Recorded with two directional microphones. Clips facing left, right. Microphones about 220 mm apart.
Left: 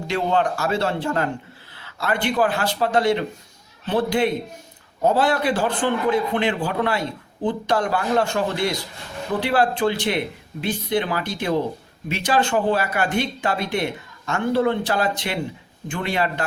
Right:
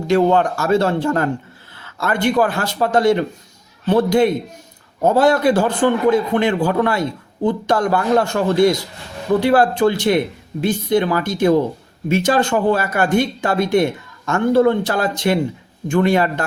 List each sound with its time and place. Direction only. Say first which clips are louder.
0.1 s speech: right 7 dB; 45° right (ahead or behind)